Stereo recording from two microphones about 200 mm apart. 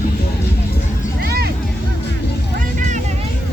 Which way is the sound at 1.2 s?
50° right (ahead or behind).